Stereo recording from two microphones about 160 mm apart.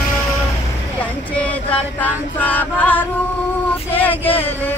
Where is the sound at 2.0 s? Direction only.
10° left (ahead or behind).